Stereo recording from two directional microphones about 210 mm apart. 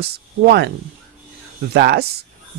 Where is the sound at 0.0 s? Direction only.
50° right (ahead or behind).